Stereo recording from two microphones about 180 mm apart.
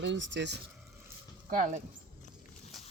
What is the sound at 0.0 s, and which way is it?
Speech, 85° right.